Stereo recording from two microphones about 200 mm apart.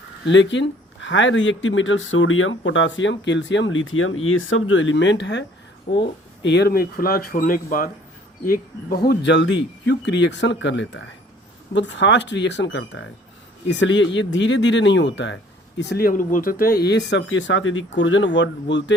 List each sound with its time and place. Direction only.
0.3 s speech: 65° left (ahead or behind)
15.8 s speech: 55° left (ahead or behind)